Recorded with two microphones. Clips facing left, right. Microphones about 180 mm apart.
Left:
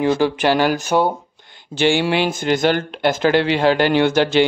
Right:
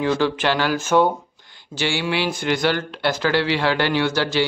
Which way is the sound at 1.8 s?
55° left (ahead or behind).